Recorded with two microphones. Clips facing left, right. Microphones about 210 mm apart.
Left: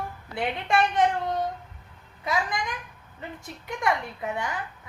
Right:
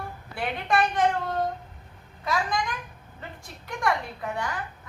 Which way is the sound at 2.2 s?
20° left (ahead or behind).